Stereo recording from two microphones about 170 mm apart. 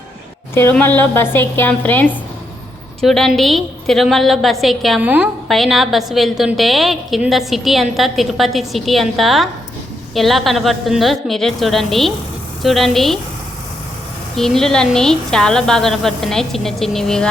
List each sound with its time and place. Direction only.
0.5 s a woman's voice: 10° left (ahead or behind)
14.3 s a woman's voice: centre (ahead or behind)